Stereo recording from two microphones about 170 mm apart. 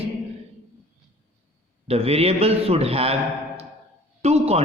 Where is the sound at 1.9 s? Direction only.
35° right (ahead or behind).